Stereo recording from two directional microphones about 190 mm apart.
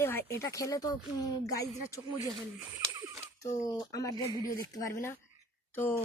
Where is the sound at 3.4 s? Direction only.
20° left (ahead or behind).